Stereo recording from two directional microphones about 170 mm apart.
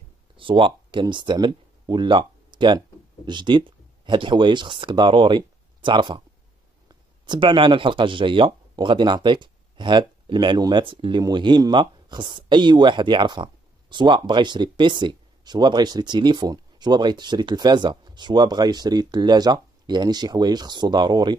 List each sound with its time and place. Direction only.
0.4 s speech: 30° right (ahead or behind)